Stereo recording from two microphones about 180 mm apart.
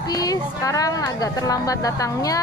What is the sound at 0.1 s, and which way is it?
A woman's voice, 20° left (ahead or behind).